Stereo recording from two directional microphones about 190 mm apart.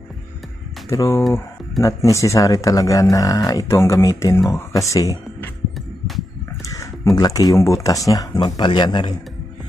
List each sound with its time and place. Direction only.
0.8 s speech: 15° left (ahead or behind)
6.6 s a sound: 20° left (ahead or behind)
7.2 s speech: 20° left (ahead or behind)